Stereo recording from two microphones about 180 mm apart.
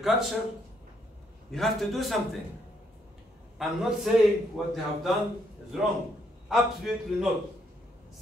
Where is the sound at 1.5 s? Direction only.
Centre (ahead or behind).